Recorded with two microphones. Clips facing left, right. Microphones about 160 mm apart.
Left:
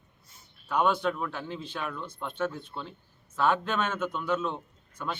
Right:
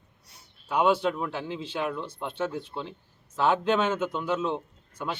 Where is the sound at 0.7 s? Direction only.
10° right (ahead or behind).